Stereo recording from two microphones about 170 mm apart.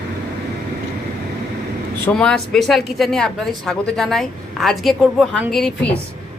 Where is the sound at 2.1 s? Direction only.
5° left (ahead or behind).